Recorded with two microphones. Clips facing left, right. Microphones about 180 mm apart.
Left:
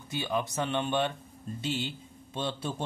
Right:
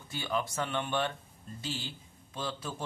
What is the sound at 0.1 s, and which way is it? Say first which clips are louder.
Speech: left 3 dB; 20° left (ahead or behind).